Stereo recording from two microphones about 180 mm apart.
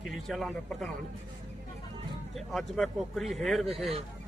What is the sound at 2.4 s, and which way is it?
A man's voice, centre (ahead or behind).